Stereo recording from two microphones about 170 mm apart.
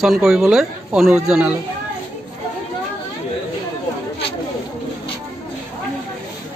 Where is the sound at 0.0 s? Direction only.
Centre (ahead or behind).